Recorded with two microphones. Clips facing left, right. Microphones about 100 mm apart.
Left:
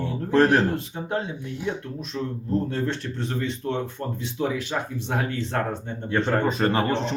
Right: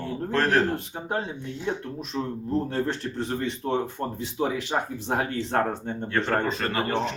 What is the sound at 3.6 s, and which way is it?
Speech, 25° right (ahead or behind).